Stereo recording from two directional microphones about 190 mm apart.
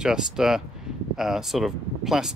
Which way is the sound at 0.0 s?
5° right (ahead or behind).